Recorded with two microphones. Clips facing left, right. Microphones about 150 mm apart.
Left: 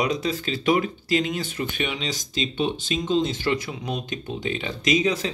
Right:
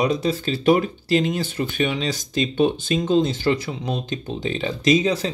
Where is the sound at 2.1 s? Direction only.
50° right (ahead or behind).